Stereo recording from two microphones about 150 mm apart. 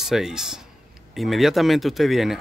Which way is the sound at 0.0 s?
5° right (ahead or behind).